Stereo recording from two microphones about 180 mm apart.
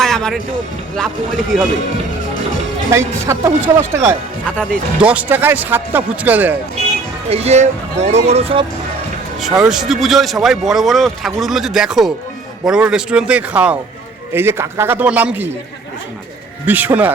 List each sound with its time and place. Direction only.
0.0 s music: centre (ahead or behind)
1.5 s speech: centre (ahead or behind)
2.9 s speech: 15° right (ahead or behind)
4.4 s speech: 5° left (ahead or behind)
4.9 s speech: 5° right (ahead or behind)
7.3 s speech: 35° right (ahead or behind)
9.4 s speech: 5° right (ahead or behind)
16.6 s speech: 10° right (ahead or behind)